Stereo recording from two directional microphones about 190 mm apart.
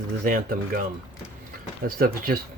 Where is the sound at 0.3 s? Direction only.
45° right (ahead or behind).